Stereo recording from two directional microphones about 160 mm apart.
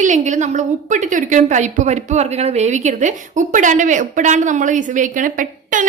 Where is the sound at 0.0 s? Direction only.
50° right (ahead or behind).